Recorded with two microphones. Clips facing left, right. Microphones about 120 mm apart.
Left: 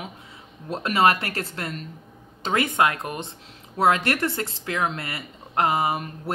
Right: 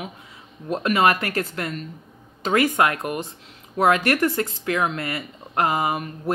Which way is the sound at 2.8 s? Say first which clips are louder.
Right 1 dB; 30° left (ahead or behind).